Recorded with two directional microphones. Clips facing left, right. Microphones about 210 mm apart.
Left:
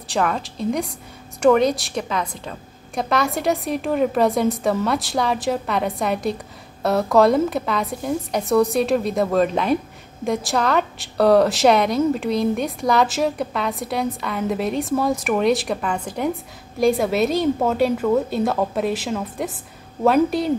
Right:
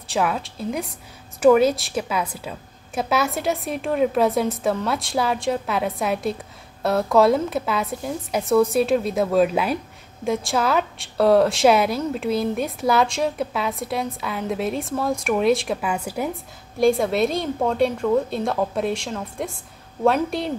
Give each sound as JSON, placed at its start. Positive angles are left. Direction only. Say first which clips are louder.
{"t": 0.1, "sound": "a woman's voice", "louder": "left 1 dB", "side_deg": 0}